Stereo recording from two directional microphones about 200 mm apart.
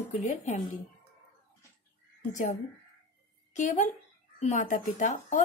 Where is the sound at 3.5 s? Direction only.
40° left (ahead or behind).